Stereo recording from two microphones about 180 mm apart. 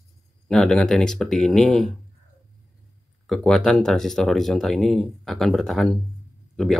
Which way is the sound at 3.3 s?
Centre (ahead or behind).